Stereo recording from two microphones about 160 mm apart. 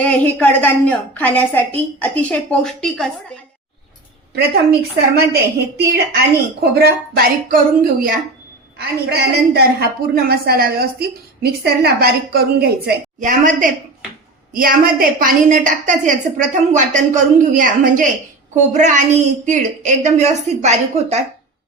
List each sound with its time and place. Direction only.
0.0 s a woman's voice: 5° left (ahead or behind)
5.1 s a woman's voice: 90° right; by 8.2 s 65° right (ahead or behind)
8.8 s a woman's voice: 80° right
11.6 s a woman's voice: 90° right
13.1 s a woman's voice: 55° right (ahead or behind)
14.5 s a woman's voice: 65° right (ahead or behind)
18.5 s a woman's voice: 50° right (ahead or behind)